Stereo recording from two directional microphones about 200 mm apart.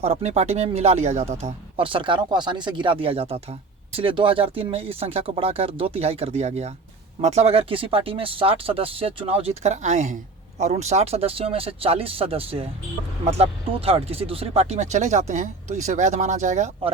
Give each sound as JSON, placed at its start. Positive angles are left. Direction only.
{"t": 0.0, "sound": "speech", "side_deg": -30}